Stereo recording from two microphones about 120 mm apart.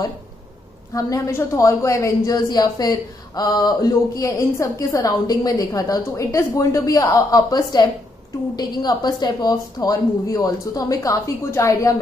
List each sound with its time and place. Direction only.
0.9 s a woman's voice: 25° left (ahead or behind)